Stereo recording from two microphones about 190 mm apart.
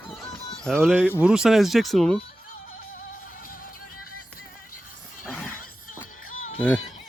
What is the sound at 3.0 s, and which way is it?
Music, 45° left (ahead or behind).